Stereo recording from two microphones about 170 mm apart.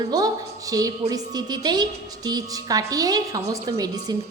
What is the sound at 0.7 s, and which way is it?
Speech, 20° right (ahead or behind).